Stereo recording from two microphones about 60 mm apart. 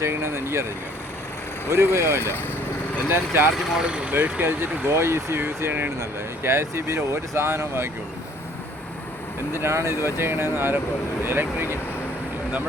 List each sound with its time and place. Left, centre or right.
0.0 s speech: right
1.7 s speech: right
3.8 s speech: centre
4.1 s speech: right
9.6 s speech: right